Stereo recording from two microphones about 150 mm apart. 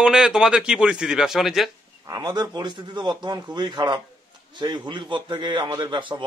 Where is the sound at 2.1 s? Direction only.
25° right (ahead or behind).